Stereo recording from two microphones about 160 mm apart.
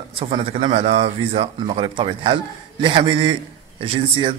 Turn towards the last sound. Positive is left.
turn(degrees=-30)  # may be behind; listen again after turning